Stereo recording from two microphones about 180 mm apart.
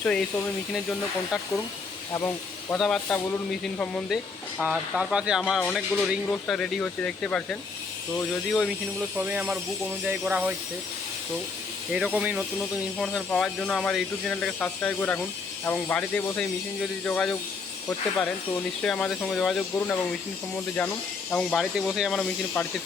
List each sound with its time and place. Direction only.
0.0 s speech: 5° left (ahead or behind)
2.1 s speech: 15° left (ahead or behind)
2.7 s speech: 5° left (ahead or behind)
9.1 s speech: 10° right (ahead or behind)
11.9 s speech: 5° right (ahead or behind)